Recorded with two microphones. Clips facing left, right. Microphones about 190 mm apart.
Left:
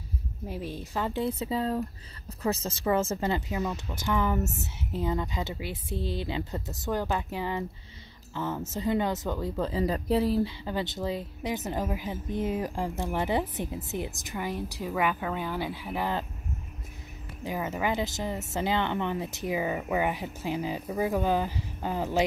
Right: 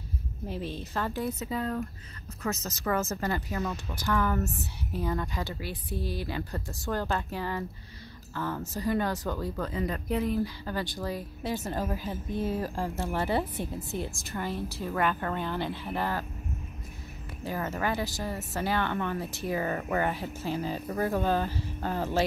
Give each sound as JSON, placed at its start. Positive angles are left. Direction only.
{"t": 0.5, "sound": "speech", "side_deg": 10}
{"t": 10.6, "sound": "speech", "side_deg": 20}
{"t": 17.4, "sound": "speech", "side_deg": 15}